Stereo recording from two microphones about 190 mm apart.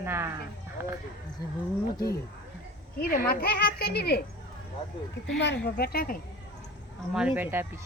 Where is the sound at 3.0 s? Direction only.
50° left (ahead or behind).